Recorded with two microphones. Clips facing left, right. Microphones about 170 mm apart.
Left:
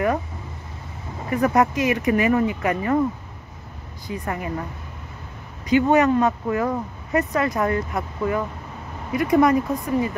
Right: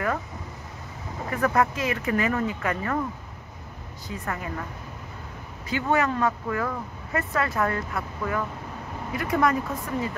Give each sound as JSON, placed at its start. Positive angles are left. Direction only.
{"t": 1.3, "sound": "speech", "side_deg": 20}
{"t": 4.1, "sound": "speech", "side_deg": 15}
{"t": 5.7, "sound": "speech", "side_deg": 20}